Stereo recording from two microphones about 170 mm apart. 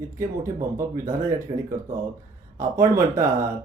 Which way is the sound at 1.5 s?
35° right (ahead or behind).